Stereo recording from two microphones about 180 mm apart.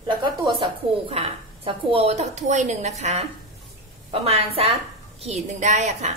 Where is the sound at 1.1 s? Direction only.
30° right (ahead or behind).